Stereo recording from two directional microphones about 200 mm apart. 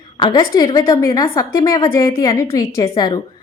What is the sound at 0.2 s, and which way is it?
A woman's voice, 20° left (ahead or behind).